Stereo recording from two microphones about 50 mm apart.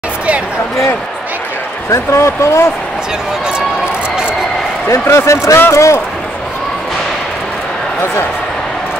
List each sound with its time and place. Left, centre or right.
1.9 s speech: left
5.1 s speech: left